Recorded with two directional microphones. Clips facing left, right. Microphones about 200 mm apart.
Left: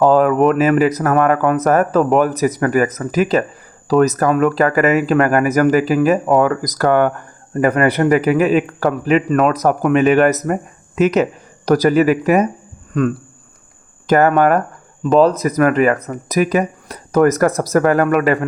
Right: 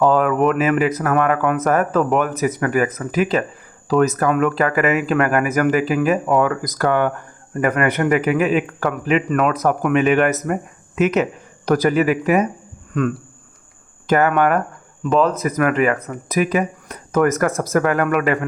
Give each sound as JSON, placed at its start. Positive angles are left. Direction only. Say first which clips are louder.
{"t": 0.0, "sound": "speech", "louder": "left 4 dB", "side_deg": 35}
{"t": 7.5, "sound": "speech", "louder": "left 4 dB", "side_deg": 35}
{"t": 14.1, "sound": "speech", "louder": "left 3 dB", "side_deg": 40}